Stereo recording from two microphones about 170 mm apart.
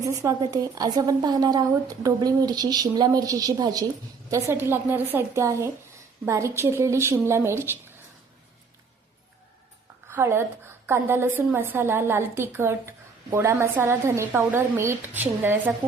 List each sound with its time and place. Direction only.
0.0 s a woman's voice: 20° right (ahead or behind)
10.1 s a woman's voice: 15° right (ahead or behind)